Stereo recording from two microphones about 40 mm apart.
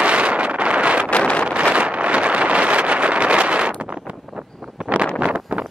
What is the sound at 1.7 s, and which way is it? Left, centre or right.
Vehicle, right.